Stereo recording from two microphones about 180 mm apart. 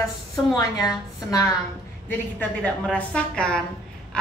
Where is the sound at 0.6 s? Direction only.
20° left (ahead or behind).